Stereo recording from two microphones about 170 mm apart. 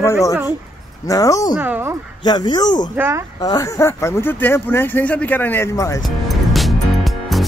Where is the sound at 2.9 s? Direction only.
10° right (ahead or behind).